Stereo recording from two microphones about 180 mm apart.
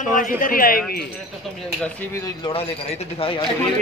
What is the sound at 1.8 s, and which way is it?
Speech, 10° left (ahead or behind).